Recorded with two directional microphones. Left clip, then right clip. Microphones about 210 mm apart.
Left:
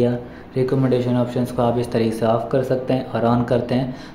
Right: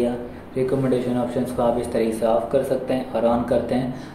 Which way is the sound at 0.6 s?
50° left (ahead or behind).